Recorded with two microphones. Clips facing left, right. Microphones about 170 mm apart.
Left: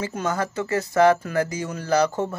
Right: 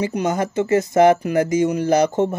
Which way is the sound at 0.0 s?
15° right (ahead or behind).